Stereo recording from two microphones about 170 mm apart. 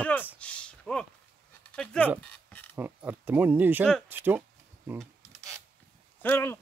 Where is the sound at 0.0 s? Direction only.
10° left (ahead or behind).